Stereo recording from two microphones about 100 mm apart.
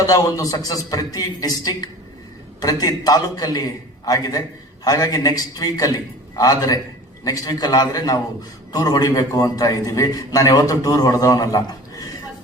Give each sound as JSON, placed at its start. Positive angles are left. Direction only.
{"t": 0.0, "sound": "a man's voice", "side_deg": 35}